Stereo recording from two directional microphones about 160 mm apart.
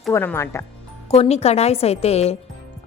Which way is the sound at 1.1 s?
40° left (ahead or behind).